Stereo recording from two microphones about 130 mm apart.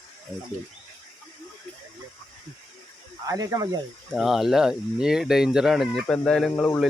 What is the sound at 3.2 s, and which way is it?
Speech, 30° right (ahead or behind).